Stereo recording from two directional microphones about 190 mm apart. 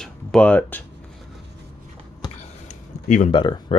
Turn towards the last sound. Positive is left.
turn(degrees=25)  # may be behind; listen again after turning